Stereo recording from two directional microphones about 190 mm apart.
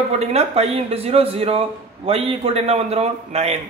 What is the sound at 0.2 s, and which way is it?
A man's voice, 35° right (ahead or behind).